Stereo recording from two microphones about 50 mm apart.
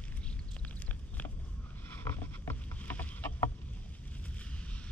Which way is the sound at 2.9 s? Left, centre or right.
Left.